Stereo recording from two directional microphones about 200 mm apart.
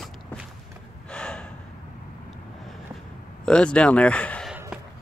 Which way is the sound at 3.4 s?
5° left (ahead or behind).